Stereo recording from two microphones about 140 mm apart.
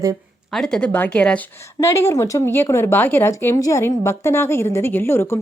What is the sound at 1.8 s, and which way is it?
Speech, 20° left (ahead or behind).